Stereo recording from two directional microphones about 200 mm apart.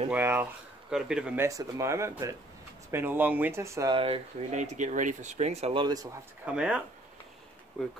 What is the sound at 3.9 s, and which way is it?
Speech, 30° right (ahead or behind).